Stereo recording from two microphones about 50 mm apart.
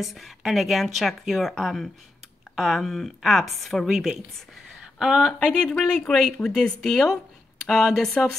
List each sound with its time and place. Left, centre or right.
0.0 s speech: centre
5.4 s speech: left; by 8.1 s centre